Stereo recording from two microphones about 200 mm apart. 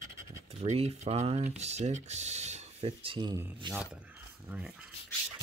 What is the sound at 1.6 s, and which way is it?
Speech, 35° right (ahead or behind).